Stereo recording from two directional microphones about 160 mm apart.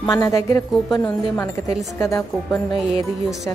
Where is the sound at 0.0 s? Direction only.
20° left (ahead or behind).